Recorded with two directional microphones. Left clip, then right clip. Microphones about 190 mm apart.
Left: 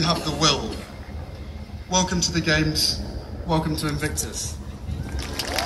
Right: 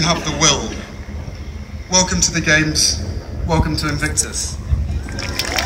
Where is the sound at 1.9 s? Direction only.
30° right (ahead or behind).